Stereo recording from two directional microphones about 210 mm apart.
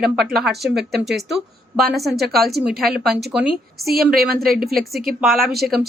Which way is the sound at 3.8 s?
45° right (ahead or behind).